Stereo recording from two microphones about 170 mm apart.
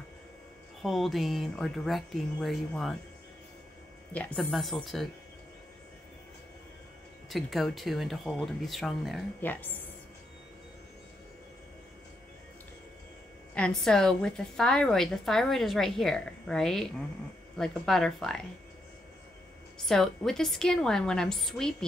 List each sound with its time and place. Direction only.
0.8 s a woman's voice: centre (ahead or behind)
4.1 s a woman's voice: 10° left (ahead or behind)
7.2 s a woman's voice: centre (ahead or behind)
9.4 s speech: 10° left (ahead or behind)
13.6 s a woman's voice: 5° left (ahead or behind)
19.9 s a woman's voice: centre (ahead or behind)